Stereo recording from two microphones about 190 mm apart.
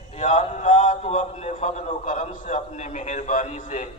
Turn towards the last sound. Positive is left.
turn(degrees=40)  # may be behind; listen again after turning